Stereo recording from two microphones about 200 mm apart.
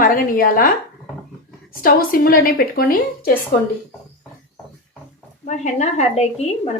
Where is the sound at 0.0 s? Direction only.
45° left (ahead or behind).